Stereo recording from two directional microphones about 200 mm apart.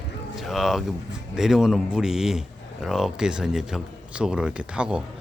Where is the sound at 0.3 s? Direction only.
Centre (ahead or behind).